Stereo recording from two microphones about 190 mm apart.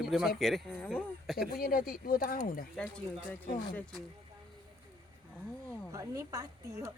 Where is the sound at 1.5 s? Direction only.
50° left (ahead or behind).